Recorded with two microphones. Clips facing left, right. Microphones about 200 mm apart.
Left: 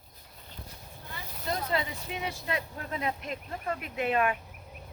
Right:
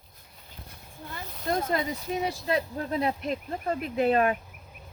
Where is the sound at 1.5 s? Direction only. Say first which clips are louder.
Right 4 dB; 45° right (ahead or behind).